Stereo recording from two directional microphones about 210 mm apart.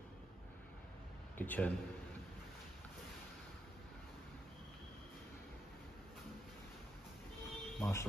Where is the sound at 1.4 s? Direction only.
5° left (ahead or behind).